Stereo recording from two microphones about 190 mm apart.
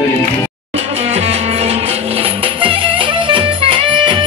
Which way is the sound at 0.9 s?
30° right (ahead or behind).